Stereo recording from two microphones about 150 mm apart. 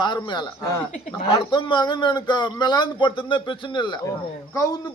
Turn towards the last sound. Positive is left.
turn(degrees=20)  # may be behind; listen again after turning